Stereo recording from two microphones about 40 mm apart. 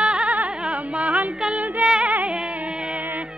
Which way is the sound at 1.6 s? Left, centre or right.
Right.